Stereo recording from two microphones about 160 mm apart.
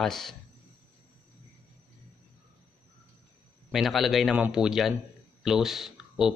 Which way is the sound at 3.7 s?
Centre (ahead or behind).